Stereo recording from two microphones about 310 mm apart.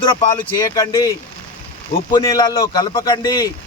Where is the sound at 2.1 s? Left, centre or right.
Centre.